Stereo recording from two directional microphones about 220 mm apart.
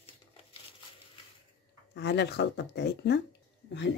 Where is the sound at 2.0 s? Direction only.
50° left (ahead or behind).